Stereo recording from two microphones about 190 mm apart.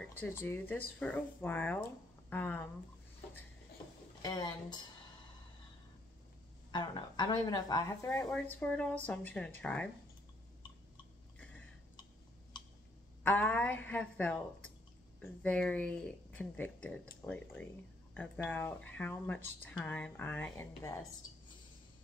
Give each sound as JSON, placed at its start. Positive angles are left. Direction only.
{"t": 0.2, "sound": "speech", "side_deg": 10}
{"t": 4.2, "sound": "speech", "side_deg": 20}
{"t": 6.7, "sound": "speech", "side_deg": 25}
{"t": 13.2, "sound": "speech", "side_deg": 10}
{"t": 18.1, "sound": "speech", "side_deg": 10}